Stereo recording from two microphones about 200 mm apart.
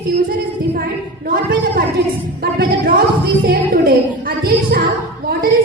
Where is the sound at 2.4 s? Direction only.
50° right (ahead or behind).